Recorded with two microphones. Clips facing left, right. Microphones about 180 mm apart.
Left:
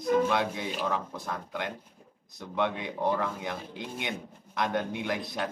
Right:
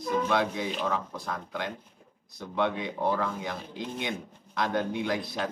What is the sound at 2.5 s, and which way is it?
A man's voice, 20° left (ahead or behind).